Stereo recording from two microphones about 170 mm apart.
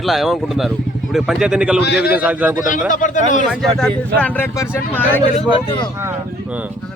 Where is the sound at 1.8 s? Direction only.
85° left.